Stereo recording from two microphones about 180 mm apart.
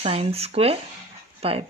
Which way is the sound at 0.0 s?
35° right (ahead or behind).